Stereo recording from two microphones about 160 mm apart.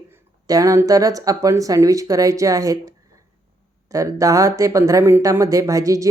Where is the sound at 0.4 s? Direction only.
20° right (ahead or behind).